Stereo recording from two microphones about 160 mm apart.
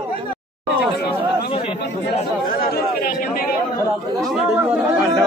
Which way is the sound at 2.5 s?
65° left (ahead or behind).